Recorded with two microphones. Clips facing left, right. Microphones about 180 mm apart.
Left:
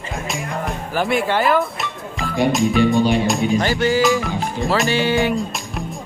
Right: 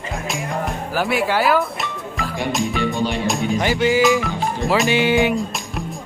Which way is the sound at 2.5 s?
Centre (ahead or behind).